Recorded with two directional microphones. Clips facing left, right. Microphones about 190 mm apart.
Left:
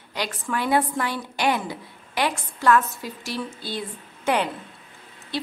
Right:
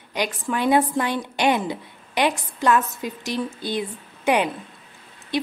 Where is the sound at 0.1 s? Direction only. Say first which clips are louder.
Right 3 dB; 20° right (ahead or behind).